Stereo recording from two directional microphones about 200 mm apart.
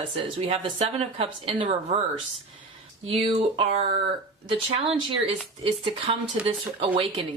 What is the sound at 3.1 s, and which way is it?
Speech, 30° right (ahead or behind).